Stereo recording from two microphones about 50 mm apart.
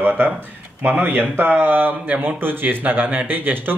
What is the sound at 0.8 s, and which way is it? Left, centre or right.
Speech, right.